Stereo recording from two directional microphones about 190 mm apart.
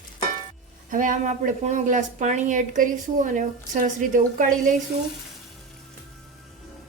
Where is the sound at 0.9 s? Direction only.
45° right (ahead or behind).